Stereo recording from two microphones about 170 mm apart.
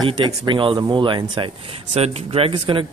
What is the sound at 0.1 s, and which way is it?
Speech, 30° right (ahead or behind).